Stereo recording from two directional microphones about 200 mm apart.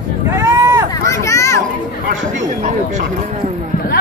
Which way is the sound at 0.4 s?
15° right (ahead or behind).